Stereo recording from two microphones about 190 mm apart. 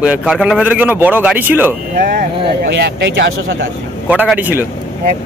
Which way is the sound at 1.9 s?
60° right (ahead or behind).